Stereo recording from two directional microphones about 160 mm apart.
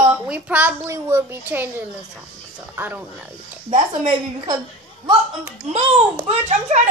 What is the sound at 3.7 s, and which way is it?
Speech, 50° right (ahead or behind).